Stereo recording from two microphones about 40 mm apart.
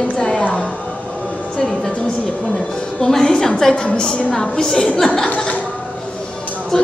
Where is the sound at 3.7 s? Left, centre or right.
Left.